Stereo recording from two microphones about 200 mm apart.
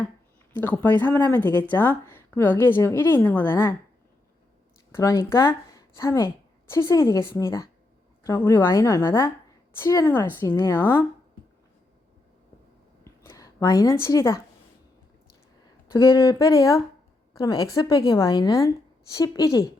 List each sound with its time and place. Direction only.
0.5 s speech: 10° left (ahead or behind)
4.9 s speech: 15° left (ahead or behind)
13.1 s a sound: 15° left (ahead or behind)
15.9 s a woman's voice: 15° left (ahead or behind)